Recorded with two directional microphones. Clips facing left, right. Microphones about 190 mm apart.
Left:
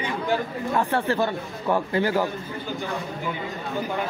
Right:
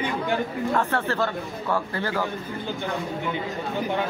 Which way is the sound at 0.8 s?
15° left (ahead or behind).